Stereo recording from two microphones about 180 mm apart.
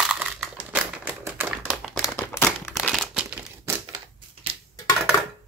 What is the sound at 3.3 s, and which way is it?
Crumpling, 15° right (ahead or behind).